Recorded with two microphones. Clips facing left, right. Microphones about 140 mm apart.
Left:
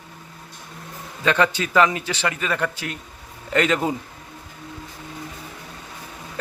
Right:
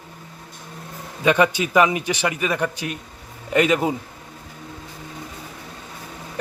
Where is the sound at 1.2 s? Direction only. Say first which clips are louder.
Right 3 dB; 15° right (ahead or behind).